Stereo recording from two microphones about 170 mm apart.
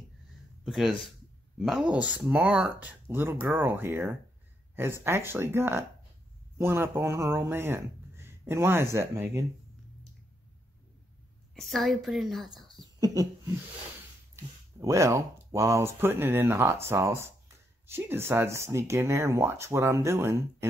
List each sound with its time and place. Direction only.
0.7 s a woman's voice: centre (ahead or behind)
11.5 s a woman's voice: centre (ahead or behind)
12.7 s a sound: 20° right (ahead or behind)
14.3 s speech: 20° right (ahead or behind)